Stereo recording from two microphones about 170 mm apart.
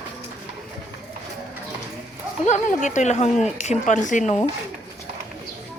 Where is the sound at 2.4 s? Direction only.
45° left (ahead or behind).